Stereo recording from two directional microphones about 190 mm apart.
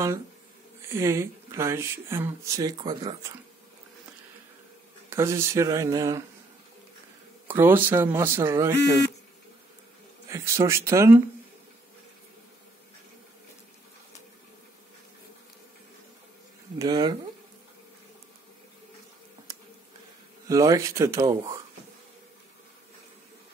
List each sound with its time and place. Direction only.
0.8 s speech: 15° right (ahead or behind)
5.1 s speech: 15° right (ahead or behind)
7.4 s speech: 10° right (ahead or behind)
10.2 s speech: 15° right (ahead or behind)
16.7 s speech: 20° right (ahead or behind)
20.4 s speech: 15° right (ahead or behind)